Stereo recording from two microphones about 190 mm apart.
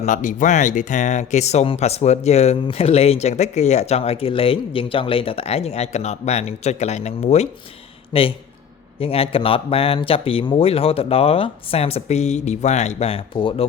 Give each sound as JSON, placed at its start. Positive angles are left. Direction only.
{"t": 0.0, "sound": "speech", "side_deg": 40}